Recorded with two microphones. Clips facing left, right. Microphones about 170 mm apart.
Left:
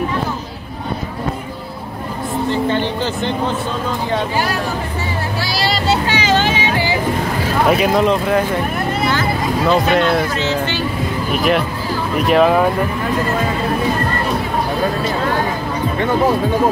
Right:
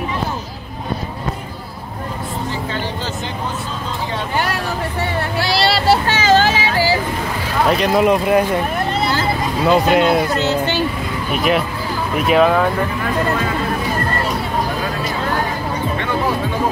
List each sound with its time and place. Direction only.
5.4 s vehicle: 60° right (ahead or behind)
6.2 s a sound: 40° right (ahead or behind)
7.6 s speech: 5° left (ahead or behind)
8.0 s speech: 15° right (ahead or behind)
9.7 s speech: 10° right (ahead or behind)
11.3 s speech: centre (ahead or behind)